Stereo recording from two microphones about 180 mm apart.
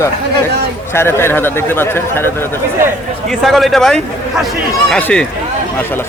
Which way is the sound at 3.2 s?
Centre (ahead or behind).